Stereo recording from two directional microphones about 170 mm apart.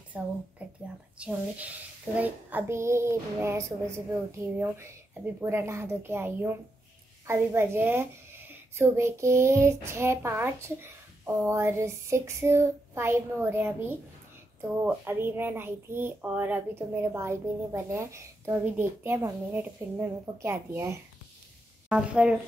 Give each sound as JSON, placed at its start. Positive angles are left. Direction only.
{"t": 0.1, "sound": "a woman's voice", "side_deg": -10}
{"t": 0.6, "sound": "a sound", "side_deg": -10}
{"t": 1.1, "sound": "a woman's voice", "side_deg": -5}